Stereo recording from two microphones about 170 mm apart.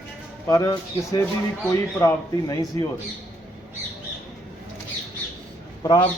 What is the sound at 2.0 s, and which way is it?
Speech, 20° left (ahead or behind).